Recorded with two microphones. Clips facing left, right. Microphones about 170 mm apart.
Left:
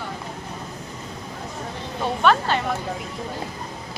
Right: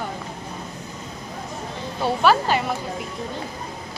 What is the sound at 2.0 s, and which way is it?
Speech, 5° right (ahead or behind).